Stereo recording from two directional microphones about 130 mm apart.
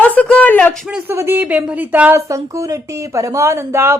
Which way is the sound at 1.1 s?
20° right (ahead or behind).